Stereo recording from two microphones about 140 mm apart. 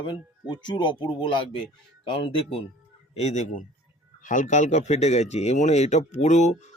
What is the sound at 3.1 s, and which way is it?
Speech, 55° left (ahead or behind).